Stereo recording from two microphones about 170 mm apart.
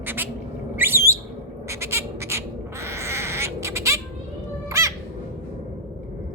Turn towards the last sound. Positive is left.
turn(degrees=-15)  # may be behind; listen again after turning